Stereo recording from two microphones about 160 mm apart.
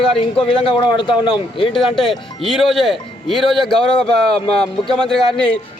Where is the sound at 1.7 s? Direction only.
Centre (ahead or behind).